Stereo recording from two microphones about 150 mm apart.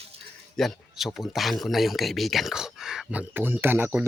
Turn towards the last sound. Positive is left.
turn(degrees=-15)  # may be behind; listen again after turning